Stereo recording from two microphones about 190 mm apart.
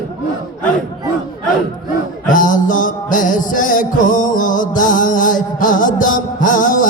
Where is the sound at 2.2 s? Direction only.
45° left (ahead or behind).